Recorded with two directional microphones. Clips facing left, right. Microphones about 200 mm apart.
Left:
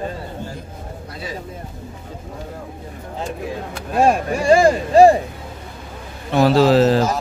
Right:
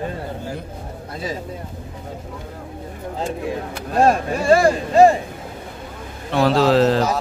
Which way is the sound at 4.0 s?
10° left (ahead or behind).